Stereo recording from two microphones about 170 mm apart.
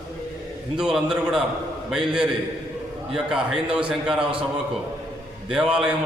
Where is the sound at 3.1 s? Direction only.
5° right (ahead or behind).